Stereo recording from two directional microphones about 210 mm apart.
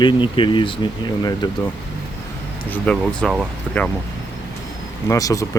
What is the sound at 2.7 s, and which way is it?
Speech, 5° left (ahead or behind).